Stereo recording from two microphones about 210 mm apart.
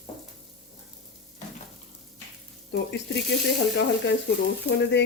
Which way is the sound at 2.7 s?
55° left (ahead or behind).